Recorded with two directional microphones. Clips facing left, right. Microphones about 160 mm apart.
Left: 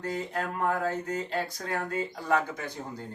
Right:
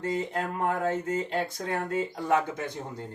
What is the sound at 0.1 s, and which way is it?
Speech, 20° right (ahead or behind).